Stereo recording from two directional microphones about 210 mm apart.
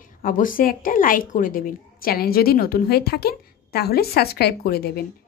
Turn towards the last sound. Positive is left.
turn(degrees=45)  # may be behind; listen again after turning